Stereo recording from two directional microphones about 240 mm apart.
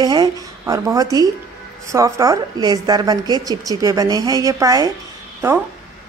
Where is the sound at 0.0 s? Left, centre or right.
Centre.